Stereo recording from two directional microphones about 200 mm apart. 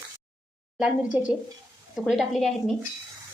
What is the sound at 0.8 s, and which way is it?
A woman's voice, 5° right (ahead or behind).